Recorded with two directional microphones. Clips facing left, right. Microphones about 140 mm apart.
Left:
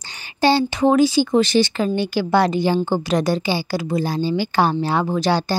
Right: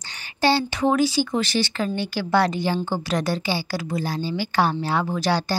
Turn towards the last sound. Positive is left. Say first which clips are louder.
# left 4 dB
turn(degrees=25)  # may be behind; listen again after turning